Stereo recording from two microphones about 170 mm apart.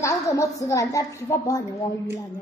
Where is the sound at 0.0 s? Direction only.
20° left (ahead or behind).